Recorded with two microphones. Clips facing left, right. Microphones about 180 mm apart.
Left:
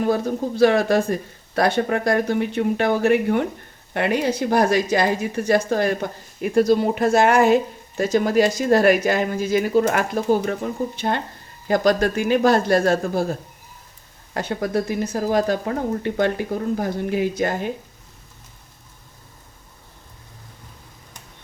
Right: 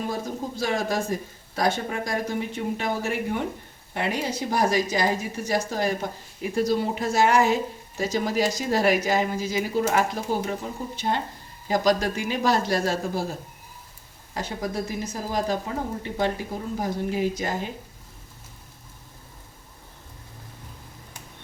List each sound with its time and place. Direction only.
0.0 s a woman's voice: 65° left (ahead or behind)
14.3 s a woman's voice: 60° left (ahead or behind)